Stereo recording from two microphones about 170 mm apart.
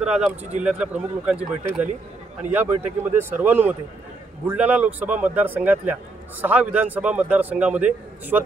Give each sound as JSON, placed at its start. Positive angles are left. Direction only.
{"t": 0.0, "sound": "a man's voice", "side_deg": -5}